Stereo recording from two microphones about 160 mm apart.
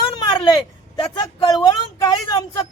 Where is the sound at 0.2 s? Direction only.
30° left (ahead or behind).